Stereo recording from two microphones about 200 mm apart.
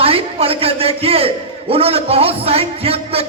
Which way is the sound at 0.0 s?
30° right (ahead or behind).